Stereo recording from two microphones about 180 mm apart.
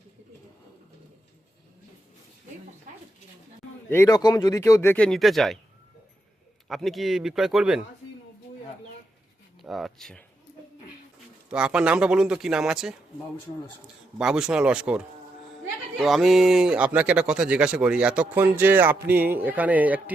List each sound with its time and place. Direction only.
3.8 s speech: 15° left (ahead or behind)
6.7 s a man's voice: centre (ahead or behind)
9.6 s speech: centre (ahead or behind)
11.4 s a man's voice: 5° right (ahead or behind)